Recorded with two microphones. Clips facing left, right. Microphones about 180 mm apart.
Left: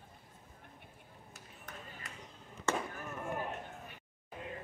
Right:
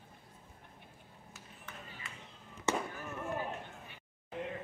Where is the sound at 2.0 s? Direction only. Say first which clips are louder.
Even; 45° left (ahead or behind).